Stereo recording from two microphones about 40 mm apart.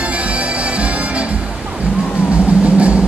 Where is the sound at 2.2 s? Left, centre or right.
Right.